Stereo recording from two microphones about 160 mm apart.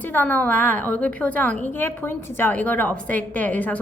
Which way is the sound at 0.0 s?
10° left (ahead or behind).